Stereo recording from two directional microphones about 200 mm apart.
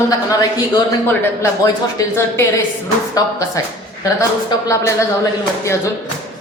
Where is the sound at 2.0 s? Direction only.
15° left (ahead or behind).